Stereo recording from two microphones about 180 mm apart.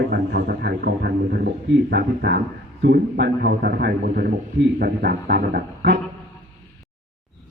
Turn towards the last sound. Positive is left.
turn(degrees=-60)  # may be behind; listen again after turning